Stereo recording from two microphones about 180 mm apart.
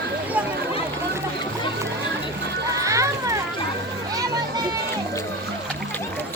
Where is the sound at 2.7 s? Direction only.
15° right (ahead or behind).